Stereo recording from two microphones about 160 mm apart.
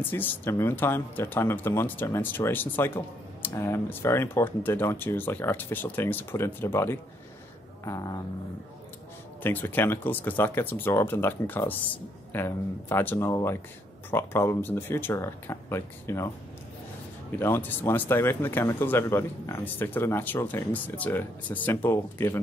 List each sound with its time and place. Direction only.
0.1 s speech: 15° left (ahead or behind)
9.4 s speech: 10° left (ahead or behind)
17.4 s speech: 15° left (ahead or behind)